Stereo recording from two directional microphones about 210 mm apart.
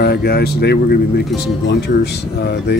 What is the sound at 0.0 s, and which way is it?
Speech, 50° left (ahead or behind).